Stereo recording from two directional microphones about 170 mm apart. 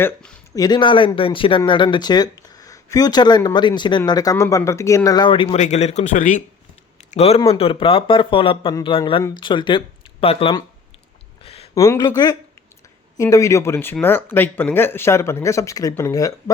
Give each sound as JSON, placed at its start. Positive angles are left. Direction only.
{"t": 0.0, "sound": "speech", "side_deg": 5}
{"t": 0.5, "sound": "speech", "side_deg": 25}
{"t": 7.1, "sound": "a man's voice", "side_deg": 35}
{"t": 11.4, "sound": "a sound", "side_deg": 35}
{"t": 11.7, "sound": "speech", "side_deg": 20}